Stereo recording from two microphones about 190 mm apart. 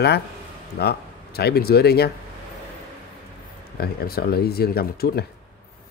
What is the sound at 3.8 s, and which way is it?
Speech, 55° left (ahead or behind).